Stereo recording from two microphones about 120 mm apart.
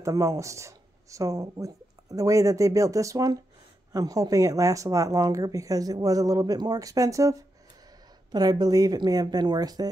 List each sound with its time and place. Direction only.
0.0 s speech: 25° right (ahead or behind)